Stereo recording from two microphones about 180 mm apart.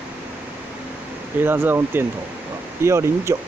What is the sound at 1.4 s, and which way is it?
Speech, 10° right (ahead or behind).